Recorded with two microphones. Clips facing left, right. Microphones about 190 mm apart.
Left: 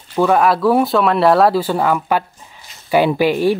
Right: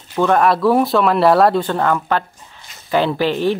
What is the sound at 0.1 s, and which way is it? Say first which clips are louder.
Speech: left 1 dB; 5° left (ahead or behind).